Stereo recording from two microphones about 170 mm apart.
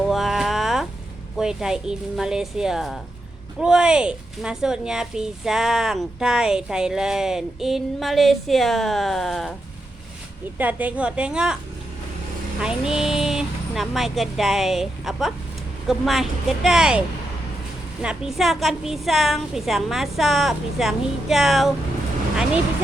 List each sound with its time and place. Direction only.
0.0 s a sound: centre (ahead or behind)
1.4 s a woman's voice: 5° right (ahead or behind)
10.6 s a woman's voice: 10° right (ahead or behind)
12.5 s a woman's voice: 5° right (ahead or behind)
18.0 s a woman's voice: 5° right (ahead or behind)